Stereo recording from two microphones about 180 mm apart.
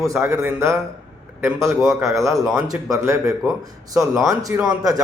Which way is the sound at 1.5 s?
Centre (ahead or behind).